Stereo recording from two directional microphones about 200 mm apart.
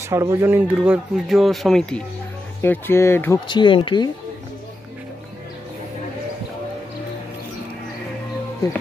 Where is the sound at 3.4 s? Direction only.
25° left (ahead or behind).